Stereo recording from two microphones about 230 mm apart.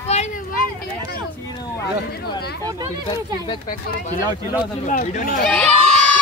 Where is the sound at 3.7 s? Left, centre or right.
Left.